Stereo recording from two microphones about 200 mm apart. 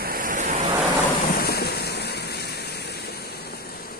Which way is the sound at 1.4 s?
50° left (ahead or behind).